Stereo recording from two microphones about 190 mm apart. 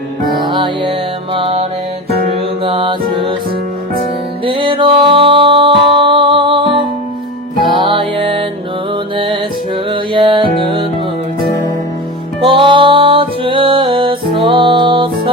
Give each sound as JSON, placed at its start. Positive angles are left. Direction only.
{"t": 0.4, "sound": "music", "side_deg": -25}
{"t": 2.6, "sound": "music", "side_deg": -25}
{"t": 4.4, "sound": "music", "side_deg": -25}
{"t": 7.8, "sound": "music", "side_deg": -25}
{"t": 12.4, "sound": "music", "side_deg": -25}